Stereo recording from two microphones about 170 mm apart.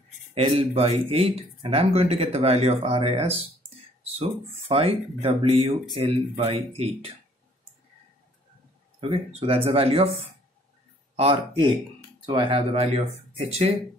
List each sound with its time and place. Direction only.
0.3 s speech: 35° right (ahead or behind)
4.6 s speech: 30° right (ahead or behind)
9.1 s speech: 30° right (ahead or behind)